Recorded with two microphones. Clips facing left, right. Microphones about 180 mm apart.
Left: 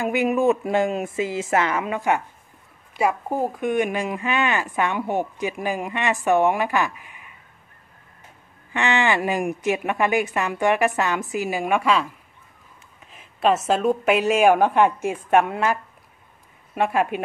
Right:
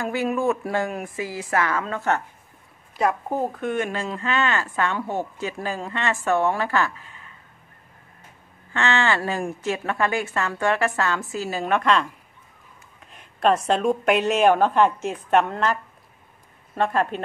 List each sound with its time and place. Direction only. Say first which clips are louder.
0.0 s speech: left 3 dB; 20° left (ahead or behind)
8.7 s speech: left 1 dB; 15° left (ahead or behind)